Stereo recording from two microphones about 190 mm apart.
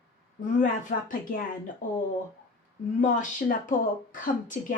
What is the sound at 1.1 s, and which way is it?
Speech, 45° left (ahead or behind).